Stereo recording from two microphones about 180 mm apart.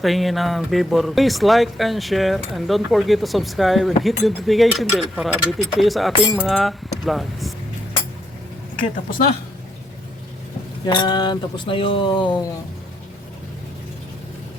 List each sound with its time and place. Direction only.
0.0 s speech: centre (ahead or behind)
8.8 s a woman's voice: 50° left (ahead or behind)
10.8 s speech: 25° left (ahead or behind)